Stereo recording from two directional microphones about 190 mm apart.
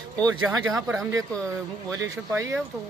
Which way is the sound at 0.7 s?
15° right (ahead or behind).